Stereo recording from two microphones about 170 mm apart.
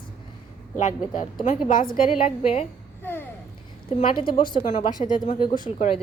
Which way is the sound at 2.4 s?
35° left (ahead or behind).